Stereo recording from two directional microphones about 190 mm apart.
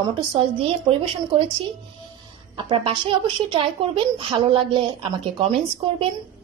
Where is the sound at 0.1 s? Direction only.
30° right (ahead or behind).